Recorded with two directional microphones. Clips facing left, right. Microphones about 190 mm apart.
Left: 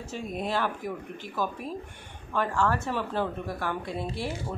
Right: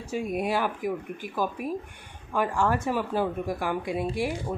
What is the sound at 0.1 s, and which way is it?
Speech, 10° right (ahead or behind).